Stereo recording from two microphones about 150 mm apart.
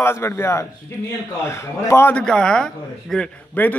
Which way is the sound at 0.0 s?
15° left (ahead or behind).